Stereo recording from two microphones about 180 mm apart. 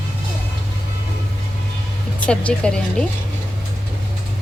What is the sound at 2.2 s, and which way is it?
Speech, 5° left (ahead or behind).